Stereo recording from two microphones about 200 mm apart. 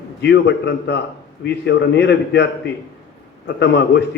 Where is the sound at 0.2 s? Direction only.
60° left (ahead or behind).